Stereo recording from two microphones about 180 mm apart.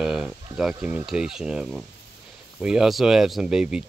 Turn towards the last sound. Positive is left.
turn(degrees=-5)  # may be behind; listen again after turning